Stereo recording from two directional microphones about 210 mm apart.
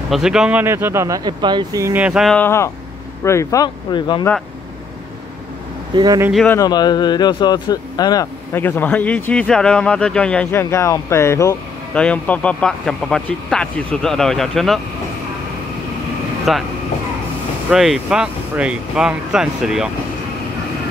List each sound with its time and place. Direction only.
0.1 s speech: 5° right (ahead or behind); by 4.3 s 20° left (ahead or behind)
5.9 s speech: 15° right (ahead or behind)
6.3 s speech: 5° left (ahead or behind)
6.6 s speech: 20° left (ahead or behind); by 14.8 s centre (ahead or behind)
16.5 s speech: centre (ahead or behind)
17.6 s speech: centre (ahead or behind)